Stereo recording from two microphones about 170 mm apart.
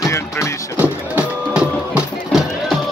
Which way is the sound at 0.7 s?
5° right (ahead or behind).